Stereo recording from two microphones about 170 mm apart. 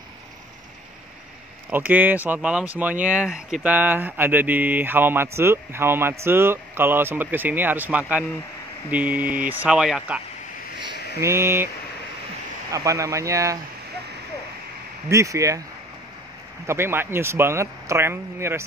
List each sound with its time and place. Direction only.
1.7 s speech: 10° right (ahead or behind)
12.7 s speech: 20° right (ahead or behind)
15.0 s speech: 20° right (ahead or behind)
16.6 s speech: 15° right (ahead or behind)